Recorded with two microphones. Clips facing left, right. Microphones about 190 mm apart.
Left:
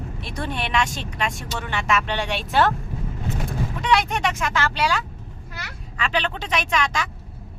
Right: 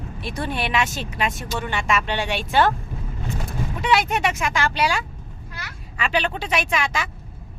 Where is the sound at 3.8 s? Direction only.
5° right (ahead or behind).